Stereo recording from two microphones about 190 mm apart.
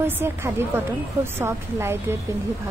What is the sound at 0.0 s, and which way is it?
Speech, 10° right (ahead or behind).